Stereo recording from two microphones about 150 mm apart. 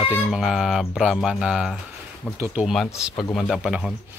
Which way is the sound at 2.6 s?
Centre (ahead or behind).